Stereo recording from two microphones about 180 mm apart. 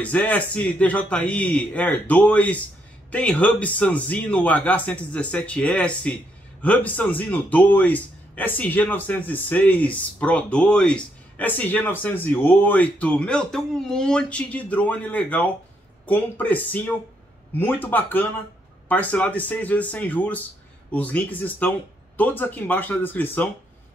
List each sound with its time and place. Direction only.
0.0 s speech: 10° left (ahead or behind)